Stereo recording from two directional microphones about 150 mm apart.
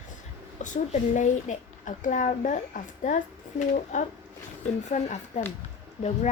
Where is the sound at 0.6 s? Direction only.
55° left (ahead or behind).